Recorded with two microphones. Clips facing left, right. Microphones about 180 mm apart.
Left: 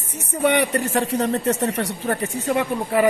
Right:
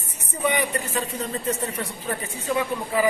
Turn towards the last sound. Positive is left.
turn(degrees=65)  # may be behind; listen again after turning